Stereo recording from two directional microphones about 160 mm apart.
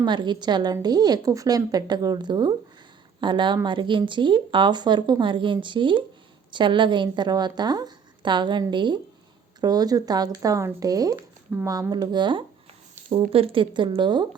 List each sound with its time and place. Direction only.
0.0 s speech: 30° right (ahead or behind)